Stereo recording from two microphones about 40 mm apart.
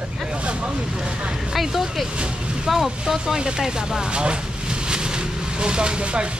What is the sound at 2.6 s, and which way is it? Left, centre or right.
Speech, centre.